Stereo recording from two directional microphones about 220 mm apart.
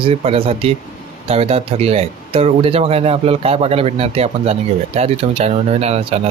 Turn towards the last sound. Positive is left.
turn(degrees=-30)  # may be behind; listen again after turning